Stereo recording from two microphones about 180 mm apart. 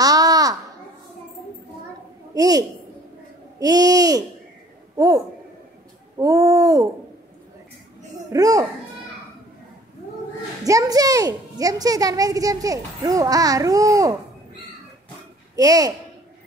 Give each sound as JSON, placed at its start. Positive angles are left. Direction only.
{"t": 0.0, "sound": "a sound", "side_deg": -20}
{"t": 2.3, "sound": "a woman's voice", "side_deg": -20}
{"t": 8.3, "sound": "a child's voice", "side_deg": -20}
{"t": 10.6, "sound": "a child's voice", "side_deg": -20}
{"t": 15.5, "sound": "speech", "side_deg": -20}